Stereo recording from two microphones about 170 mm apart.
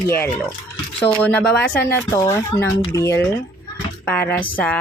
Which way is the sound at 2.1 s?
20° left (ahead or behind).